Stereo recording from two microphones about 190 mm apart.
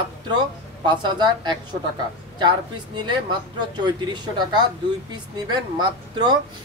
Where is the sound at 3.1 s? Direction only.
25° right (ahead or behind).